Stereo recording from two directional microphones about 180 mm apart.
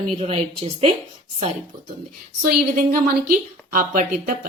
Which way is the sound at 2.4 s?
55° right (ahead or behind).